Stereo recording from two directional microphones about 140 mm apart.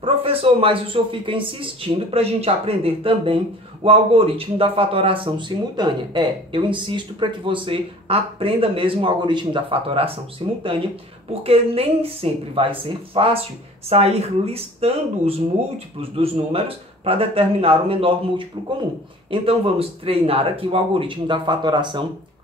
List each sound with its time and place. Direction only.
0.0 s speech: 45° right (ahead or behind)